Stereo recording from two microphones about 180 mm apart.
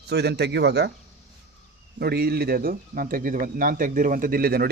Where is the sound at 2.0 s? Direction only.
60° right (ahead or behind).